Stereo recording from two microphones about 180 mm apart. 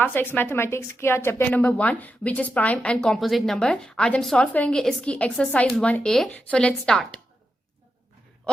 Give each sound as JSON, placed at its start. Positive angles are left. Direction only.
{"t": 0.0, "sound": "a woman's voice", "side_deg": 10}